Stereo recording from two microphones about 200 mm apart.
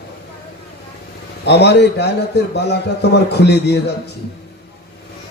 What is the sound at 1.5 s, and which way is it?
A man's voice, 60° left (ahead or behind).